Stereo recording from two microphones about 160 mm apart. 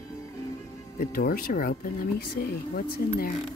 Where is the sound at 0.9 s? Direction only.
65° left (ahead or behind).